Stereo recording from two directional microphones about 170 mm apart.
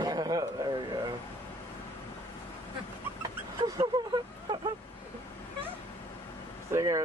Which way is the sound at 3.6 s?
25° right (ahead or behind).